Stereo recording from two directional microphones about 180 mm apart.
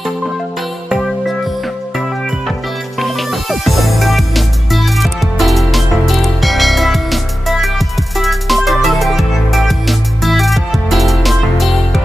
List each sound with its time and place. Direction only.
3.0 s music: centre (ahead or behind)